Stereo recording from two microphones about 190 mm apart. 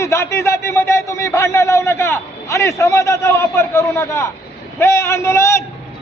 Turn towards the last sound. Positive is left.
turn(degrees=15)  # may be behind; listen again after turning